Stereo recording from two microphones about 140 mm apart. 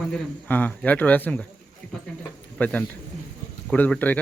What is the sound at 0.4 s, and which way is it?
Speech, 10° left (ahead or behind).